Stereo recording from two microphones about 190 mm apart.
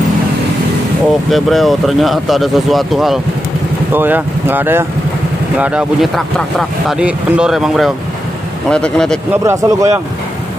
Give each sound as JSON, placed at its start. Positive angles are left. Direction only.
{"t": 1.3, "sound": "speech", "side_deg": 0}
{"t": 9.4, "sound": "speech", "side_deg": -15}